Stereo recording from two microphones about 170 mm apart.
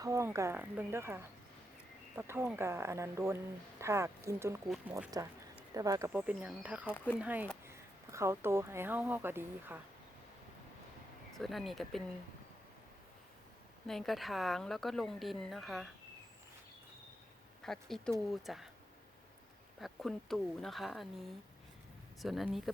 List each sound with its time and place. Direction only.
0.0 s speech: 20° right (ahead or behind)
4.7 s speech: 5° right (ahead or behind)
5.7 s speech: 20° right (ahead or behind)
6.1 s speech: 10° right (ahead or behind)
6.9 s speech: 10° left (ahead or behind)
7.2 s speech: 10° right (ahead or behind)
11.3 s speech: centre (ahead or behind)
13.8 s speech: centre (ahead or behind)
17.6 s speech: centre (ahead or behind)
19.8 s speech: centre (ahead or behind)
22.2 s speech: centre (ahead or behind)